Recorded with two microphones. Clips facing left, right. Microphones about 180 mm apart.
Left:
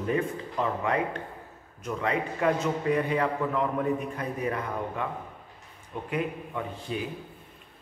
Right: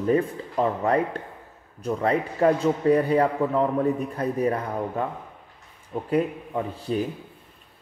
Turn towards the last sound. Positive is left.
turn(degrees=-35)  # may be behind; listen again after turning